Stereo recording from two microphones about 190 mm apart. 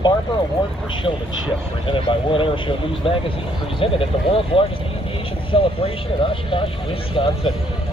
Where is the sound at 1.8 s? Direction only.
25° left (ahead or behind).